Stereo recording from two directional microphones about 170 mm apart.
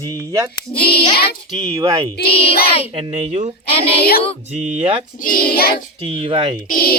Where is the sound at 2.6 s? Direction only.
35° left (ahead or behind).